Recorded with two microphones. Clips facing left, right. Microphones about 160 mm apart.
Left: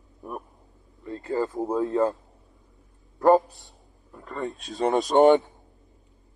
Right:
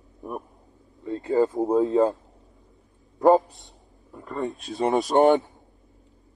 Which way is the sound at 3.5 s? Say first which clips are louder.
Right 1 dB; 20° right (ahead or behind).